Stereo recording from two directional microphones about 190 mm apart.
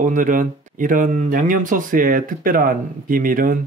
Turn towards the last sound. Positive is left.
turn(degrees=-45)  # may be behind; listen again after turning